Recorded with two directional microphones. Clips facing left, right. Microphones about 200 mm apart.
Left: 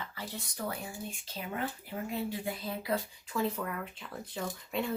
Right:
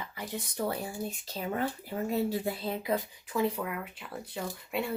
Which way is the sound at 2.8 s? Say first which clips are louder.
Right 2 dB; 20° right (ahead or behind).